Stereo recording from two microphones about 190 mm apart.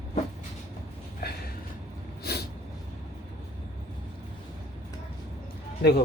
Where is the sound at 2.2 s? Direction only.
55° left (ahead or behind).